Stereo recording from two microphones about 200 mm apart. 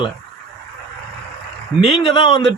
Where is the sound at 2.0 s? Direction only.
25° left (ahead or behind).